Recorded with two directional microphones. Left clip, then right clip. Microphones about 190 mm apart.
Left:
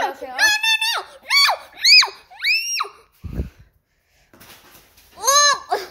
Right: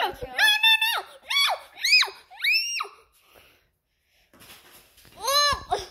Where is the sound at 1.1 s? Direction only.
15° left (ahead or behind).